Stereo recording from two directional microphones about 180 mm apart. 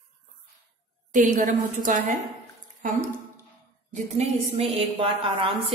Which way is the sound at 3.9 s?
35° right (ahead or behind).